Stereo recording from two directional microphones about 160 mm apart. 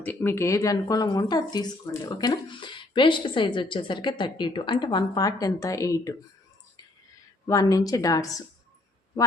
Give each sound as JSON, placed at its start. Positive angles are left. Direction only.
{"t": 0.0, "sound": "speech", "side_deg": 10}
{"t": 7.4, "sound": "speech", "side_deg": 20}